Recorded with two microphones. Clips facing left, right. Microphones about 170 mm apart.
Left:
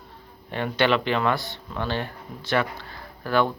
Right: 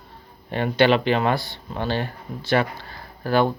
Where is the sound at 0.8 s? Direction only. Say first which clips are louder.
Right 4 dB; 25° right (ahead or behind).